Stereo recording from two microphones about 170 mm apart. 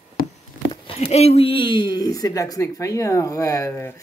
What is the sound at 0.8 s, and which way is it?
Speech, 40° left (ahead or behind).